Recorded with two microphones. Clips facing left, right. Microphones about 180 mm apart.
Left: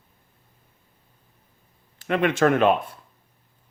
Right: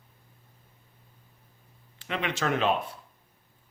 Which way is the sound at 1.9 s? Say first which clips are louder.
Left 10 dB; 50° left (ahead or behind).